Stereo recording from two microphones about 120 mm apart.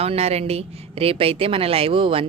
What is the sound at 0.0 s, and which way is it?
A woman's voice, 60° right (ahead or behind).